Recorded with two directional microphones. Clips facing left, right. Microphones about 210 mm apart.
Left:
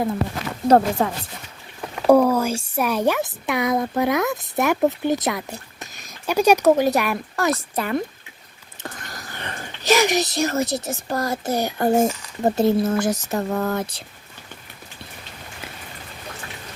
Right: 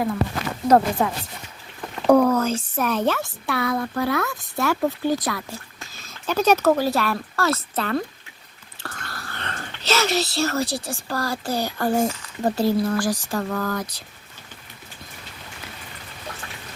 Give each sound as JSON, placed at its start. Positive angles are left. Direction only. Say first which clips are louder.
{"t": 0.7, "sound": "speech", "louder": "left 1 dB", "side_deg": 35}
{"t": 2.0, "sound": "speech", "louder": "left 1 dB", "side_deg": 10}